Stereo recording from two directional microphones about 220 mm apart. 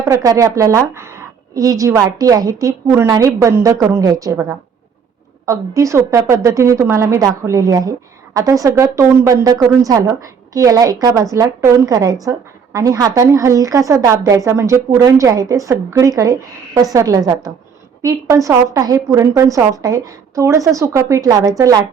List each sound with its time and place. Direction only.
0.0 s speech: 15° right (ahead or behind)